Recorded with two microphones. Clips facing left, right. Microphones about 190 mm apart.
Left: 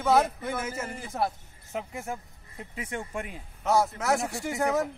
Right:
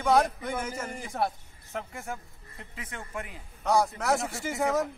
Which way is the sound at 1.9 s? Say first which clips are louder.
Left 2 dB; 15° left (ahead or behind).